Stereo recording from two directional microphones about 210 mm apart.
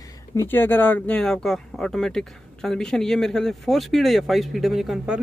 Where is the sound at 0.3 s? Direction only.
10° left (ahead or behind).